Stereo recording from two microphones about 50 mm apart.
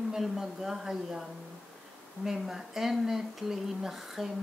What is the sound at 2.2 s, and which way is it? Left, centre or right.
Speech, centre.